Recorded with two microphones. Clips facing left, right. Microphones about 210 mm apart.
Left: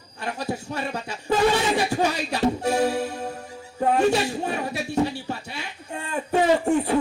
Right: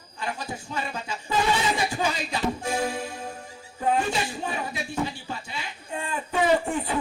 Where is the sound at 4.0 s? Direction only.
65° left (ahead or behind).